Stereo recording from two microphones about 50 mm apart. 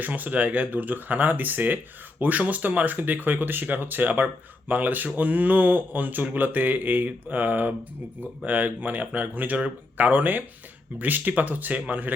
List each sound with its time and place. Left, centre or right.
0.0 s speech: right